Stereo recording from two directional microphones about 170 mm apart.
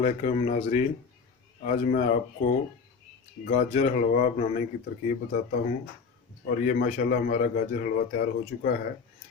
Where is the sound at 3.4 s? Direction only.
45° left (ahead or behind).